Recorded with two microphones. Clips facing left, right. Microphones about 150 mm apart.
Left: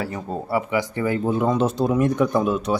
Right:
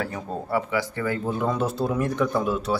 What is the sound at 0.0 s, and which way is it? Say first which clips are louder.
Speech: left 2 dB; 5° left (ahead or behind).